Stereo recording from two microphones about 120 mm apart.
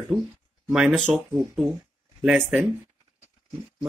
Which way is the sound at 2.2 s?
10° right (ahead or behind).